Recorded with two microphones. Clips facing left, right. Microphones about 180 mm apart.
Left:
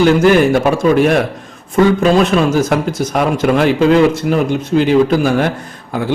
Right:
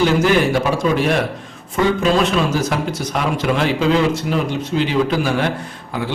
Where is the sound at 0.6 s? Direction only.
50° left (ahead or behind).